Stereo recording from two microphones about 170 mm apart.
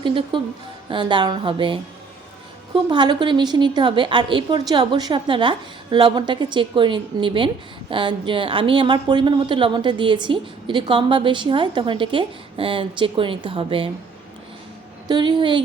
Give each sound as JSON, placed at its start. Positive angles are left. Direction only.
{"t": 0.0, "sound": "a woman's voice", "side_deg": -30}
{"t": 15.0, "sound": "a woman's voice", "side_deg": -25}